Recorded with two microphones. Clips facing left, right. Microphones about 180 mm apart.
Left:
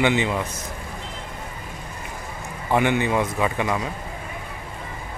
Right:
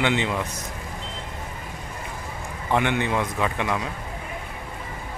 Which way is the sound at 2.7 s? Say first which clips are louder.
Left 3 dB; 5° left (ahead or behind).